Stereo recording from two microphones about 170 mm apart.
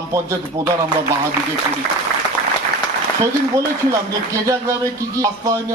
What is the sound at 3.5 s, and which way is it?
Speech, 20° right (ahead or behind).